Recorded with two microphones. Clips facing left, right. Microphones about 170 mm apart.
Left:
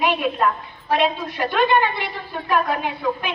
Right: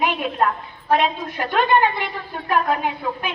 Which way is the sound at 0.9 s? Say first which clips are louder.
Right 1 dB; 50° right (ahead or behind).